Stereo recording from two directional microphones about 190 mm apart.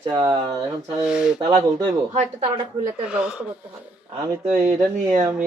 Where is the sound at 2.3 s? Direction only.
25° right (ahead or behind).